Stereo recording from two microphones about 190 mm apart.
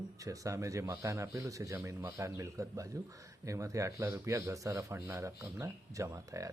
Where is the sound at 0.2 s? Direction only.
15° right (ahead or behind).